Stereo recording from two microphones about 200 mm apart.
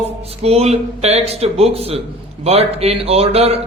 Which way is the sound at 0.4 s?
30° right (ahead or behind).